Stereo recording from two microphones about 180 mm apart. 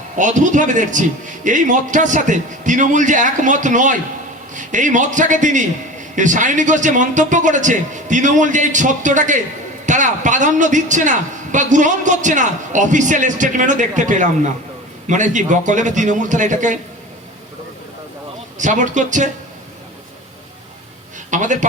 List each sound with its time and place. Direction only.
0.2 s a man's voice: 45° right (ahead or behind)
18.6 s a man's voice: 45° right (ahead or behind)
21.2 s speech: 45° right (ahead or behind)